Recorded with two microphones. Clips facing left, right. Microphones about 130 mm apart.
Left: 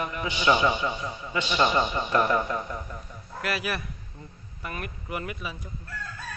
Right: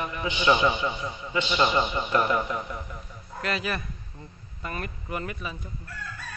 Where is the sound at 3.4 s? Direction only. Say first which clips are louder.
Even; 10° left (ahead or behind).